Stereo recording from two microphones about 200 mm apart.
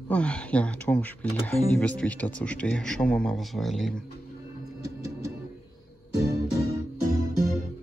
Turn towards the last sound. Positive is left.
turn(degrees=-15)  # may be behind; listen again after turning